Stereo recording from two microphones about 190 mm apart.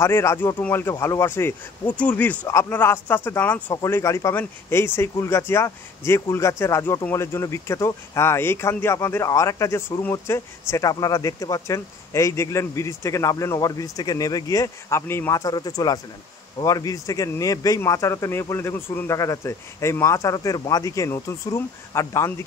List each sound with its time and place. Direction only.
0.0 s speech: 15° left (ahead or behind)